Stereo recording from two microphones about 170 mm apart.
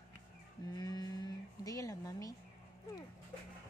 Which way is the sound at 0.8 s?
20° left (ahead or behind).